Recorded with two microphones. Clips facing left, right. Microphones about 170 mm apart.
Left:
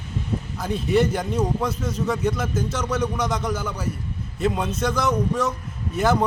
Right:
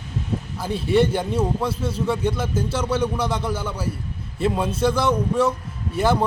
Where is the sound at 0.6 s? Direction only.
30° right (ahead or behind).